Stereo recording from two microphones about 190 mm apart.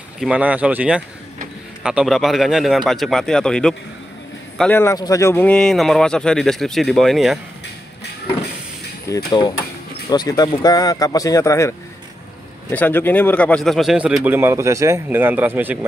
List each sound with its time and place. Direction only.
0.2 s speech: 5° right (ahead or behind)
9.1 s speech: 20° left (ahead or behind)
12.7 s speech: 10° left (ahead or behind); by 15.8 s 10° right (ahead or behind)